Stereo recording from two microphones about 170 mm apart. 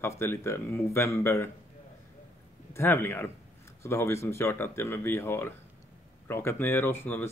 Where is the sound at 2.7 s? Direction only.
15° left (ahead or behind).